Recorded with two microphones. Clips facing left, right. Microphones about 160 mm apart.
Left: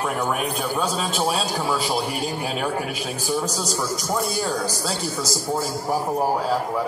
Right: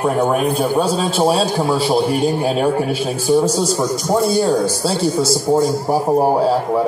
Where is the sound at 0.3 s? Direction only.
35° right (ahead or behind).